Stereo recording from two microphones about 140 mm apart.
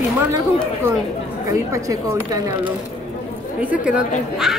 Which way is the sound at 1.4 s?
25° right (ahead or behind).